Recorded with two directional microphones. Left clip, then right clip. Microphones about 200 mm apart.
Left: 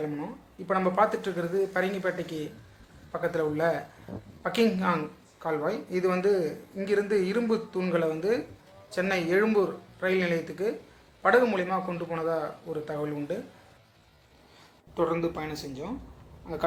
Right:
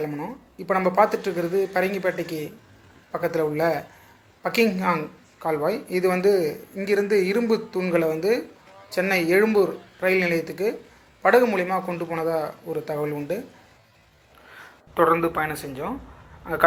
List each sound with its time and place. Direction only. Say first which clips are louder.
0.7 s speech: right 5 dB; 15° right (ahead or behind)
15.1 s speech: right 8 dB; centre (ahead or behind)